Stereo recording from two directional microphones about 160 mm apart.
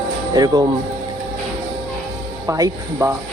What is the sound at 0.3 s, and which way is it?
Speech, 25° right (ahead or behind).